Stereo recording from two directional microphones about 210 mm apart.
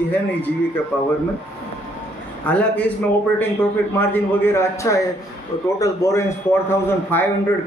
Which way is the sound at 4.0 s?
10° left (ahead or behind).